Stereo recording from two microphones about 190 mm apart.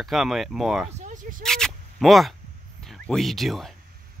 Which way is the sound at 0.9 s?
40° right (ahead or behind).